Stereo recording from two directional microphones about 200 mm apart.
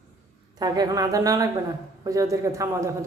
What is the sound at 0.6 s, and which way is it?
A woman's voice, 20° right (ahead or behind).